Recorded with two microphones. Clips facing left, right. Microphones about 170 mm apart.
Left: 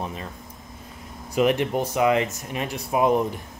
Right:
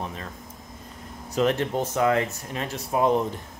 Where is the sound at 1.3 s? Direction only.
15° left (ahead or behind).